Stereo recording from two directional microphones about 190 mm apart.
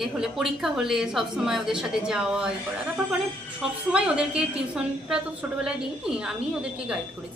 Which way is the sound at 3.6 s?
5° right (ahead or behind).